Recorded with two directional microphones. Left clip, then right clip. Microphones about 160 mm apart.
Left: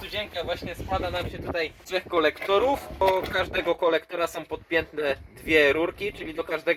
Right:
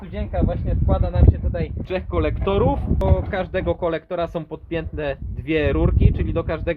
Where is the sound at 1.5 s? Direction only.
25° left (ahead or behind).